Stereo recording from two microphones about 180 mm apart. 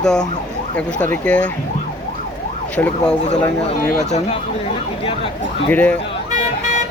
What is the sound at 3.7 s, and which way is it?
Speech, 35° left (ahead or behind).